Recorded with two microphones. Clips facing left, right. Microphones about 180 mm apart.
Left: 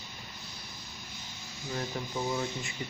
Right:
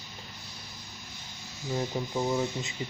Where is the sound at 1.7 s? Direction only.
20° right (ahead or behind).